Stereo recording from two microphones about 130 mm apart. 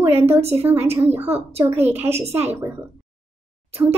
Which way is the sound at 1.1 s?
15° right (ahead or behind).